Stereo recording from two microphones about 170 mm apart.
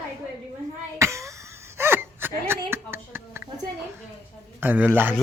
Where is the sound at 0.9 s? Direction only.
15° right (ahead or behind).